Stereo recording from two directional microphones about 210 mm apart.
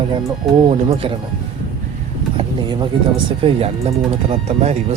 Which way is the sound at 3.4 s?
25° right (ahead or behind).